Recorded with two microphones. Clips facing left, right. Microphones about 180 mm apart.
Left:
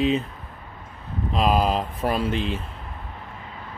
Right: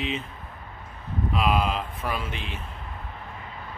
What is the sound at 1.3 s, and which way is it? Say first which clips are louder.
Speech: left 4 dB; 35° left (ahead or behind).